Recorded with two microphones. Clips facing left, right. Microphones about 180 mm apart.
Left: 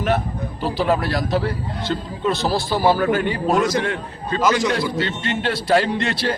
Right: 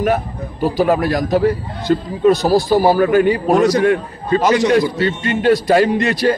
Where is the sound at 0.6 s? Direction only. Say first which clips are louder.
Right 7 dB; 45° right (ahead or behind).